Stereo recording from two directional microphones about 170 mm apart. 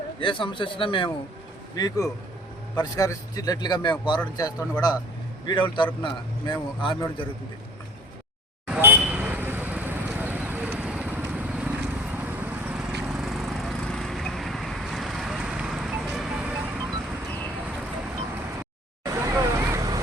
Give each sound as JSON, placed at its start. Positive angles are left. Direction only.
{"t": 0.2, "sound": "a man's voice", "side_deg": 30}
{"t": 8.6, "sound": "vehicle", "side_deg": -10}
{"t": 19.0, "sound": "vehicle", "side_deg": -15}